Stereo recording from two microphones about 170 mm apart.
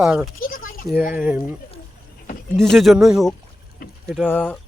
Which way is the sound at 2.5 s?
5° left (ahead or behind).